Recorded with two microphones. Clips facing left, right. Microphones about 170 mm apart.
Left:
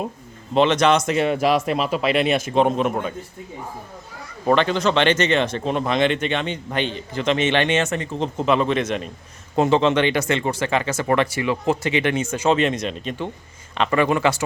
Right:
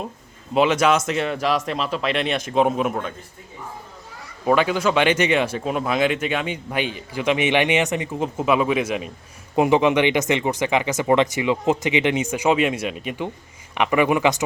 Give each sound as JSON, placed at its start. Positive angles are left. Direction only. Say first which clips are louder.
{"t": 0.5, "sound": "speech", "louder": "left 1 dB", "side_deg": -5}
{"t": 4.4, "sound": "speech", "louder": "even", "side_deg": -10}